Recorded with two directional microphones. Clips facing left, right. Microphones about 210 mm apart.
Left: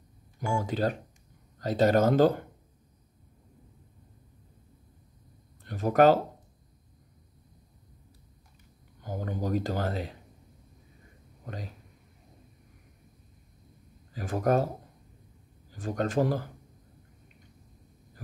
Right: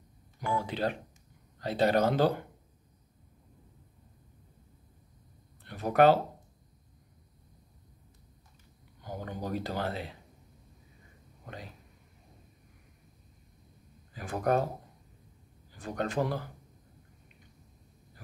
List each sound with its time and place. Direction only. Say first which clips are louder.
0.5 s speech: left 3 dB; 45° left (ahead or behind)
5.6 s speech: left 2 dB; 45° left (ahead or behind)
9.0 s speech: left 4 dB; 45° left (ahead or behind)
11.4 s speech: left 4 dB; 40° left (ahead or behind)
14.1 s speech: left 3 dB; 40° left (ahead or behind)
15.7 s speech: left 4 dB; 45° left (ahead or behind)